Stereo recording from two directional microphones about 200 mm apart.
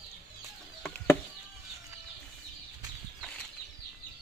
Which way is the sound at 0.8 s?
10° left (ahead or behind).